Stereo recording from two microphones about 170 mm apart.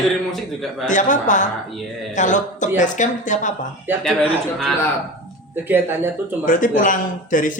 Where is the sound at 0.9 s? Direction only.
50° left (ahead or behind).